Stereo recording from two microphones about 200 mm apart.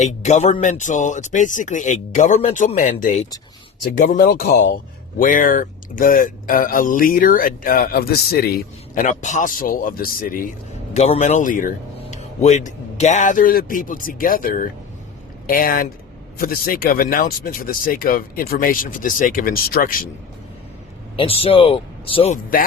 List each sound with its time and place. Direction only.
0.0 s speech: 35° left (ahead or behind)
10.9 s speech: 35° left (ahead or behind)
21.2 s speech: 30° left (ahead or behind)